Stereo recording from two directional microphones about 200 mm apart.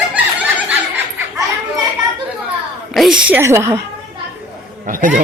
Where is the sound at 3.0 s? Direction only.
5° right (ahead or behind).